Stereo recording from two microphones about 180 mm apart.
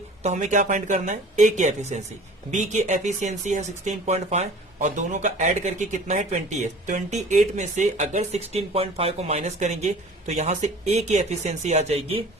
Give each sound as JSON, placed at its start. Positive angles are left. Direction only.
{"t": 0.2, "sound": "speech", "side_deg": -40}